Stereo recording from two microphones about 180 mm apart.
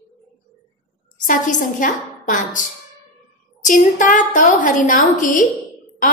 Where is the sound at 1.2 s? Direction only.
45° left (ahead or behind).